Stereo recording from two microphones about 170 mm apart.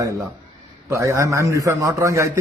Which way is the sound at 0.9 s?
15° right (ahead or behind).